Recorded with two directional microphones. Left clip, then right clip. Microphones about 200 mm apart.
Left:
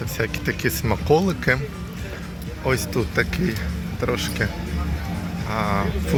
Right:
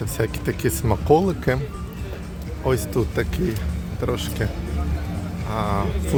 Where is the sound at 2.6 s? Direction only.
15° right (ahead or behind).